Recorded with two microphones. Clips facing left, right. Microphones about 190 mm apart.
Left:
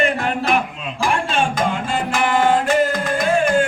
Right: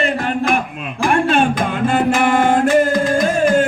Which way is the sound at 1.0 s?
55° right (ahead or behind).